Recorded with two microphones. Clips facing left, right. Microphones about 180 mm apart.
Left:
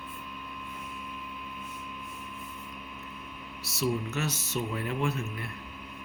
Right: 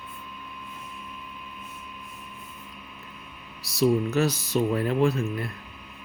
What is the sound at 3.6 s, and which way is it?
Speech, 35° right (ahead or behind).